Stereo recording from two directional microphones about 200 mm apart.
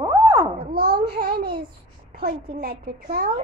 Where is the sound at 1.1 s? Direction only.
50° right (ahead or behind).